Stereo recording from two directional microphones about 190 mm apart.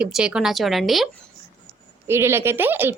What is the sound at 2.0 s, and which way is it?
Speech, 15° right (ahead or behind).